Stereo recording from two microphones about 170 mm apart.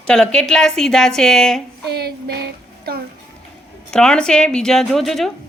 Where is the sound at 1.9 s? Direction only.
70° right (ahead or behind).